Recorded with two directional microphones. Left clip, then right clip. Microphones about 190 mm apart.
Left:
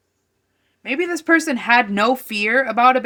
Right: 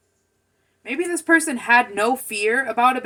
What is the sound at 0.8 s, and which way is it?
Speech, 60° left (ahead or behind).